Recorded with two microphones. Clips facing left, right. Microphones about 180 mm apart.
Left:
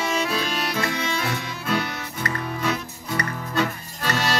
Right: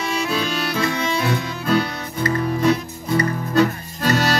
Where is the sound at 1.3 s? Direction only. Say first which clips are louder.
Right 6 dB; 35° right (ahead or behind).